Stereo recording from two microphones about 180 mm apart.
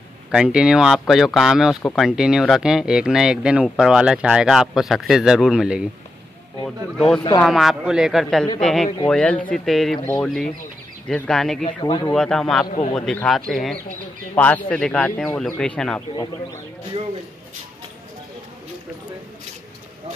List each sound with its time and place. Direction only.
0.3 s speech: 5° right (ahead or behind)
1.8 s a man's voice: 10° left (ahead or behind)
2.0 s speech: 5° right (ahead or behind)
7.3 s speech: centre (ahead or behind)
11.8 s speech: 25° left (ahead or behind)
12.1 s a man's voice: centre (ahead or behind)